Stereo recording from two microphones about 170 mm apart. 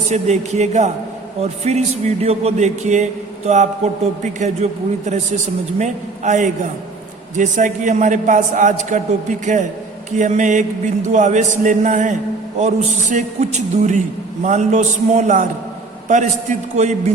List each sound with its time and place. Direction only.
0.1 s a man's voice: 40° right (ahead or behind)